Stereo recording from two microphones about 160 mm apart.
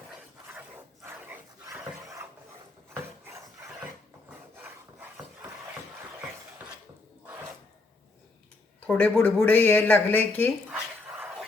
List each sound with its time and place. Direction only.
1.0 s dog: 15° right (ahead or behind)
4.3 s filing: 10° right (ahead or behind)
8.9 s speech: 10° left (ahead or behind)